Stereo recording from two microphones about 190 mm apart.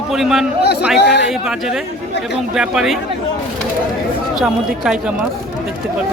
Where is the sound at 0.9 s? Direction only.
65° left (ahead or behind).